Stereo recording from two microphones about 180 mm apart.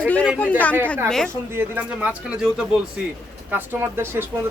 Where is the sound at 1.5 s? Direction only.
10° right (ahead or behind).